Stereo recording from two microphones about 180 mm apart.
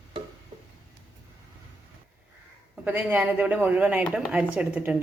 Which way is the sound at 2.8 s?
10° right (ahead or behind).